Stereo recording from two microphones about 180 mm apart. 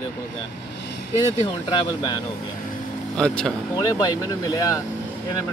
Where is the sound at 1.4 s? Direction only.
25° left (ahead or behind).